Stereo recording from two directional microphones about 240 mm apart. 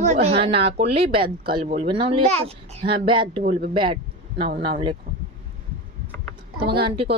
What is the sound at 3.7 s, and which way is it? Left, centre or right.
Speech, centre.